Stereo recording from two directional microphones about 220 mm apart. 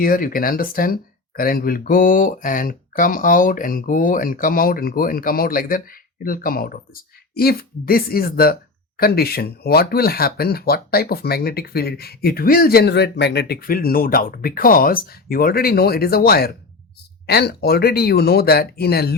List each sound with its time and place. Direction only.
0.0 s speech: 40° left (ahead or behind)